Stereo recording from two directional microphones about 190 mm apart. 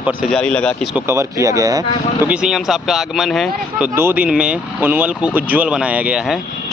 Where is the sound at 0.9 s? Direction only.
15° right (ahead or behind).